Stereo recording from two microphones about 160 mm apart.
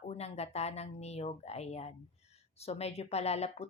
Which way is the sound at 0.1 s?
40° left (ahead or behind).